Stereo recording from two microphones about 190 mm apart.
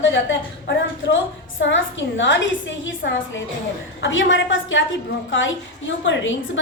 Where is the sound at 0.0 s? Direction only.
80° left.